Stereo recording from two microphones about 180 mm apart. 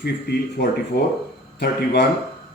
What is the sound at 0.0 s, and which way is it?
A man's voice, 65° left (ahead or behind).